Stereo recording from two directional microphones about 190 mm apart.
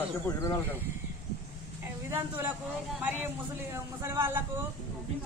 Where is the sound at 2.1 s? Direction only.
10° right (ahead or behind).